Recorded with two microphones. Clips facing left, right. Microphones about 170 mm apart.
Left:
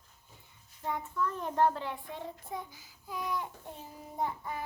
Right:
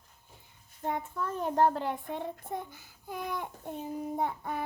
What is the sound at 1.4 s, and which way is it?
A child's voice, 40° right (ahead or behind).